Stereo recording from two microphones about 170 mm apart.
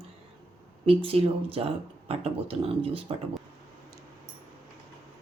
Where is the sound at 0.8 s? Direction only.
35° right (ahead or behind).